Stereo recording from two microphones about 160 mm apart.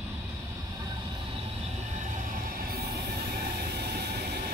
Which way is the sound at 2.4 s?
70° right (ahead or behind).